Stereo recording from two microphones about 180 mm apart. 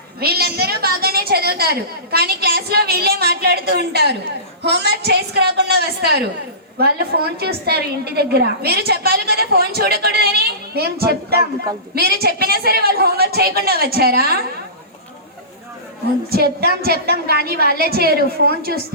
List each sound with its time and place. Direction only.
0.2 s a woman's voice: 60° right (ahead or behind)
16.3 s a woman's voice: 60° right (ahead or behind)
17.5 s a woman's voice: 55° left (ahead or behind)
17.9 s a woman's voice: 60° right (ahead or behind)
18.2 s a woman's voice: 60° left (ahead or behind)